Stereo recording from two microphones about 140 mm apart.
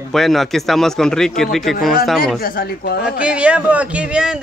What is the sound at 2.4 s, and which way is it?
Speech, 90° left.